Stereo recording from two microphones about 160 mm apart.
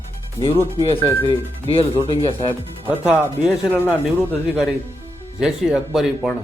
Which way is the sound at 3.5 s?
10° left (ahead or behind).